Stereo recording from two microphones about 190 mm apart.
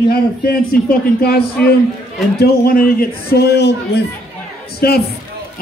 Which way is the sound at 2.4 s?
50° left (ahead or behind).